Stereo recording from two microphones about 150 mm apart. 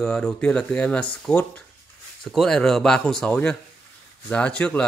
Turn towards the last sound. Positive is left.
turn(degrees=5)  # may be behind; listen again after turning